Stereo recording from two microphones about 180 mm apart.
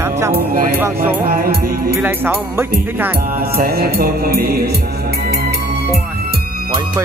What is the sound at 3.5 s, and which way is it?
Music, 60° right (ahead or behind).